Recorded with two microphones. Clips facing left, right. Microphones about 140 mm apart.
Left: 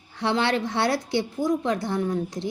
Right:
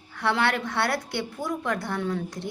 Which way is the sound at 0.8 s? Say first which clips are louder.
Left 4 dB; 60° right (ahead or behind).